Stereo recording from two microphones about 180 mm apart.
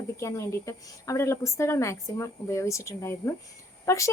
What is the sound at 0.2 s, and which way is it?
Speech, 15° left (ahead or behind).